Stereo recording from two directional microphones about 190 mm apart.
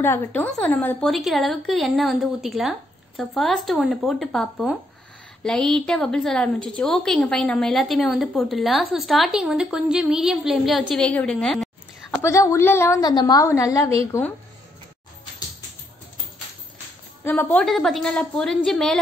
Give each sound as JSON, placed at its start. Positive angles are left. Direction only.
{"t": 0.0, "sound": "a woman's voice", "side_deg": 10}
{"t": 12.2, "sound": "a woman's voice", "side_deg": 15}
{"t": 17.2, "sound": "a woman's voice", "side_deg": 10}